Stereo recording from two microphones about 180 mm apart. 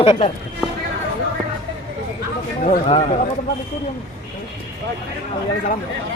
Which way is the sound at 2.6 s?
35° left (ahead or behind).